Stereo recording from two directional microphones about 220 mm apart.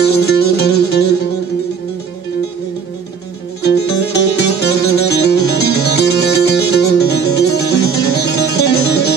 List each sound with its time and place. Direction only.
0.0 s music: 45° left (ahead or behind)
4.1 s music: 50° left (ahead or behind)